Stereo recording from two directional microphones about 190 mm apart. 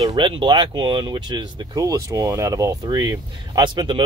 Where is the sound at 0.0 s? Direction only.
25° right (ahead or behind).